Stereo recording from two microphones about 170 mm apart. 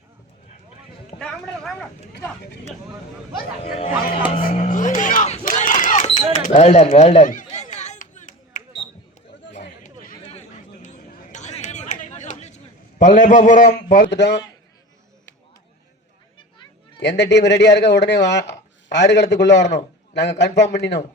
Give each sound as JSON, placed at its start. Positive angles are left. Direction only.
{"t": 1.2, "sound": "speech", "side_deg": 5}
{"t": 4.4, "sound": "speech", "side_deg": 55}
{"t": 4.6, "sound": "a sound", "side_deg": 50}
{"t": 9.8, "sound": "chatter", "side_deg": 40}
{"t": 13.0, "sound": "a man's voice", "side_deg": 50}
{"t": 14.0, "sound": "speech", "side_deg": 90}
{"t": 17.0, "sound": "speech", "side_deg": 90}